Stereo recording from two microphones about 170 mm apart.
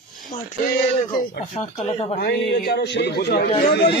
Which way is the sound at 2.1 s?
65° left (ahead or behind).